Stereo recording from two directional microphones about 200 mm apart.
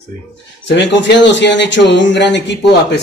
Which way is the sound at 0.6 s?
60° left (ahead or behind).